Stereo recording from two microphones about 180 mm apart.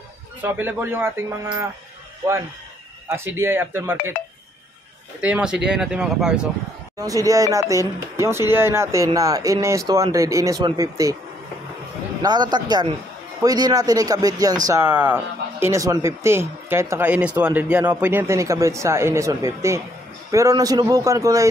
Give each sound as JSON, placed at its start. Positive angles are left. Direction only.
{"t": 0.4, "sound": "speech", "side_deg": -10}
{"t": 3.1, "sound": "speech", "side_deg": -15}
{"t": 5.2, "sound": "speech", "side_deg": -5}
{"t": 7.0, "sound": "a man's voice", "side_deg": -20}
{"t": 12.2, "sound": "a man's voice", "side_deg": -25}